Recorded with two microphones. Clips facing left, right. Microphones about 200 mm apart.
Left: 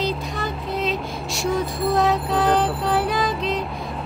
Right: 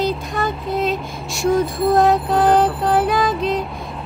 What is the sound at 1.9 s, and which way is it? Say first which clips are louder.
Music: right 5 dB; 50° right (ahead or behind).